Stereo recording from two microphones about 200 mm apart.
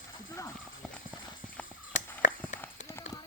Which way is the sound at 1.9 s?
40° left (ahead or behind).